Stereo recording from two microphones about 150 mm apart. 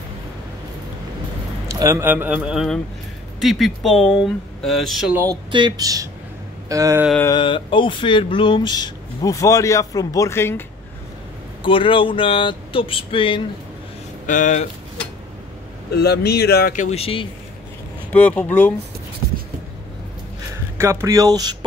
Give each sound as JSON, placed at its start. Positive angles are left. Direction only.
{"t": 1.7, "sound": "a man's voice", "side_deg": -20}
{"t": 5.1, "sound": "speech", "side_deg": -20}
{"t": 5.5, "sound": "speech", "side_deg": -30}
{"t": 7.3, "sound": "speech", "side_deg": 35}
{"t": 11.6, "sound": "speech", "side_deg": 35}
{"t": 14.2, "sound": "speech", "side_deg": 60}
{"t": 15.9, "sound": "speech", "side_deg": 90}
{"t": 16.8, "sound": "speech", "side_deg": 40}
{"t": 18.1, "sound": "speech", "side_deg": 10}
{"t": 20.7, "sound": "speech", "side_deg": -20}